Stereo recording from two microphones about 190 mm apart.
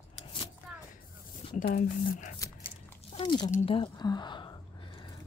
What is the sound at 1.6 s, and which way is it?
Speech, 50° left (ahead or behind).